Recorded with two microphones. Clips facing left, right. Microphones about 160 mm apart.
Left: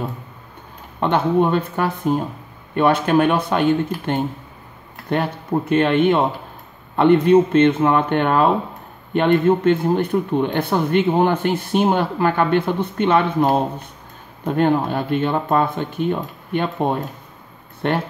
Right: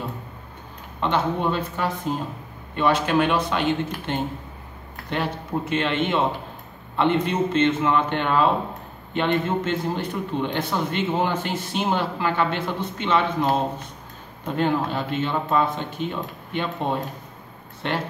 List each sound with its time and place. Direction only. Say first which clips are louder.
1.0 s a man's voice: left 6 dB; 55° left (ahead or behind)